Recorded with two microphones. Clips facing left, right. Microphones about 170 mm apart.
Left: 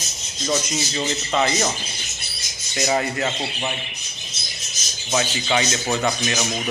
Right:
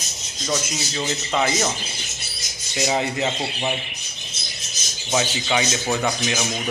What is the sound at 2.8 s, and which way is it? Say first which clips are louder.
Speech: even; 15° right (ahead or behind).